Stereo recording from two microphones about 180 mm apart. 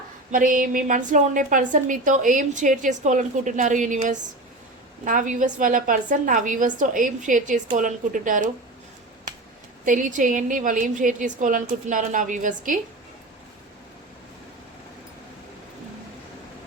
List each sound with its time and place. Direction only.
0.3 s a woman's voice: 50° right (ahead or behind)
9.8 s a woman's voice: 45° right (ahead or behind)